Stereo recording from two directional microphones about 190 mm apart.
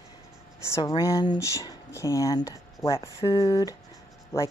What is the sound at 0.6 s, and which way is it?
Speech, 15° left (ahead or behind).